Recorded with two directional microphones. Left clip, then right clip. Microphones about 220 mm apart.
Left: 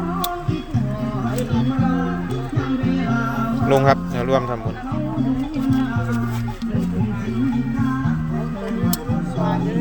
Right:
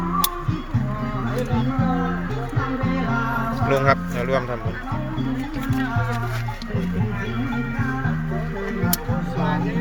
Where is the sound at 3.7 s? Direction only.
20° left (ahead or behind).